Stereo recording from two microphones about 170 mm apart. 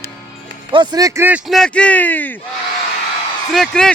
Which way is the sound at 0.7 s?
25° right (ahead or behind).